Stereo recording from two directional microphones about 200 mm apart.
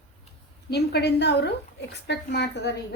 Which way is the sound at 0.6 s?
55° left (ahead or behind).